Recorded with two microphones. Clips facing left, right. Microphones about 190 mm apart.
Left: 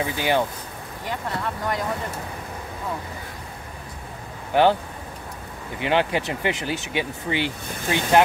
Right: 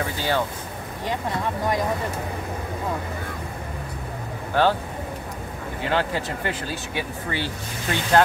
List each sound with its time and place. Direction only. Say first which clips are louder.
0.0 s speech: left 2 dB; 15° left (ahead or behind)
4.5 s speech: left 2 dB; 15° left (ahead or behind)
5.8 s speech: left 3 dB; 20° left (ahead or behind)